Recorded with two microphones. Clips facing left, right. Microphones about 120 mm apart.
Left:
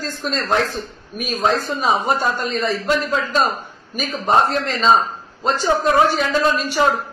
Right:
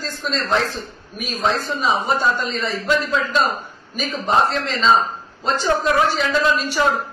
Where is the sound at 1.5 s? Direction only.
50° left (ahead or behind).